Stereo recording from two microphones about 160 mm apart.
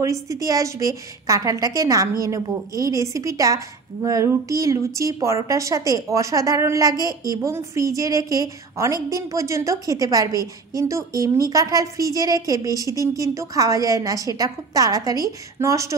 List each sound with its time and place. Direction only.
0.0 s a woman's voice: 20° right (ahead or behind)